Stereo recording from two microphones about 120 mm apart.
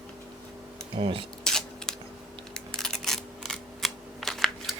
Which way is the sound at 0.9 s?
45° right (ahead or behind).